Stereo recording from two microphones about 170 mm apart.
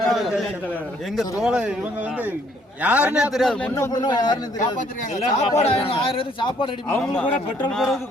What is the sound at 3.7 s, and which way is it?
Speech, 20° left (ahead or behind).